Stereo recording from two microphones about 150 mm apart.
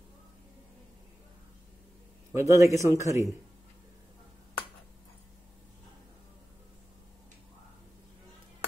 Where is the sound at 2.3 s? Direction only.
20° right (ahead or behind).